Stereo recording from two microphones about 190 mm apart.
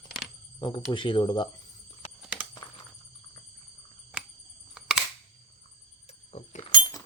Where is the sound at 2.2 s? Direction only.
5° right (ahead or behind).